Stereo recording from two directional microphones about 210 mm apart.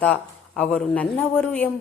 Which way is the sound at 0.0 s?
5° left (ahead or behind).